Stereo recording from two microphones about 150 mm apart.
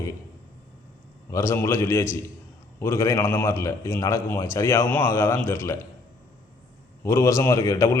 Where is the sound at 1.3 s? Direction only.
15° left (ahead or behind).